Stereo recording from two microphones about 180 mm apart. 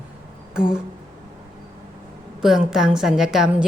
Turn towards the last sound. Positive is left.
turn(degrees=-5)  # may be behind; listen again after turning